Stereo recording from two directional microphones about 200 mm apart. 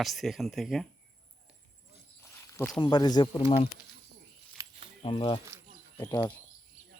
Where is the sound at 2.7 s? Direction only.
20° left (ahead or behind).